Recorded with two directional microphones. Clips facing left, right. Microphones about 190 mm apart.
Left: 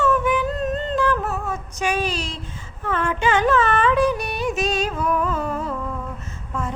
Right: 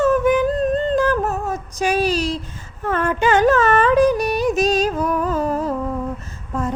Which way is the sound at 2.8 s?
40° right (ahead or behind).